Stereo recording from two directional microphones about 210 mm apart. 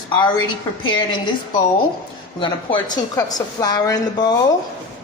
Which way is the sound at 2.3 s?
20° left (ahead or behind).